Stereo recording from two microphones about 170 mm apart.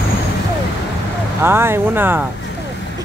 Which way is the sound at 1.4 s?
15° right (ahead or behind).